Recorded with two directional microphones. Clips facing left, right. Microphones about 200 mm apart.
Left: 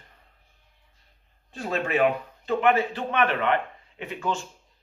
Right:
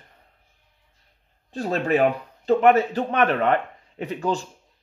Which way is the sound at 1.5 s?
40° right (ahead or behind).